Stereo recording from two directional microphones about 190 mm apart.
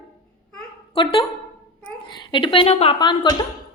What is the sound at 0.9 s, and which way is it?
Speech, 25° left (ahead or behind).